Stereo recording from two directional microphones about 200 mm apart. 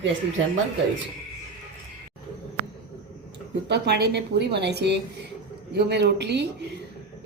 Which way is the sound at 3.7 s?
55° right (ahead or behind).